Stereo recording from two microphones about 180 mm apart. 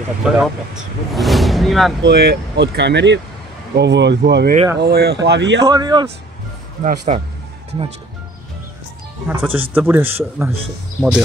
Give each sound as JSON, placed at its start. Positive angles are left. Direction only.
{"t": 0.2, "sound": "speech", "side_deg": -5}
{"t": 1.1, "sound": "a sound", "side_deg": 0}
{"t": 2.0, "sound": "speech", "side_deg": -65}
{"t": 5.6, "sound": "speech", "side_deg": -20}
{"t": 6.8, "sound": "speech", "side_deg": -45}
{"t": 9.3, "sound": "speech", "side_deg": -10}